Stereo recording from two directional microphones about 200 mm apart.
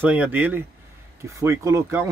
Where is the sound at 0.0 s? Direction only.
10° right (ahead or behind).